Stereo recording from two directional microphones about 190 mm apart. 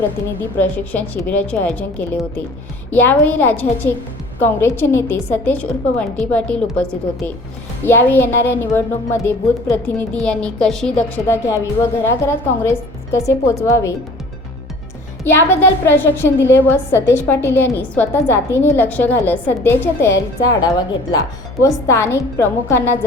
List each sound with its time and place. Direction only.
0.6 s a woman's voice: 10° left (ahead or behind)
15.2 s a woman's voice: 10° left (ahead or behind)